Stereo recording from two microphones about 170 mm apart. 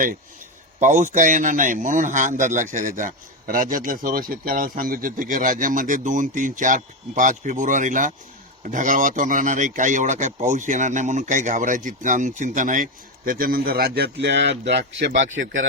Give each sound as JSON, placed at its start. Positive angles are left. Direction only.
{"t": 0.8, "sound": "a man's voice", "side_deg": -50}